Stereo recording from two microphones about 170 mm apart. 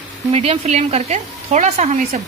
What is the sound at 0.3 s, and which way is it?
A woman's voice, 35° right (ahead or behind).